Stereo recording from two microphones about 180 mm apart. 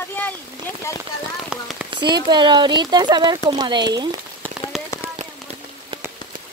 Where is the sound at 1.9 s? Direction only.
25° right (ahead or behind).